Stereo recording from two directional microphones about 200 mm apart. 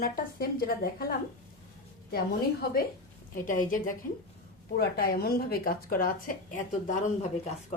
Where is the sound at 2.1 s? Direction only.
50° left (ahead or behind).